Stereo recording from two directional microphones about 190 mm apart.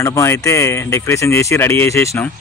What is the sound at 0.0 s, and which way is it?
Speech, 15° left (ahead or behind).